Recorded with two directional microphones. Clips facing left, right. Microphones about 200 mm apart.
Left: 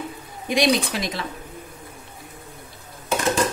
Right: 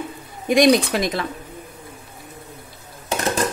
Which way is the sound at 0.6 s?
50° right (ahead or behind).